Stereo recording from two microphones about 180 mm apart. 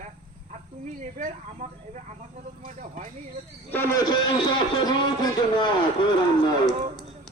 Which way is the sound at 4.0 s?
25° left (ahead or behind).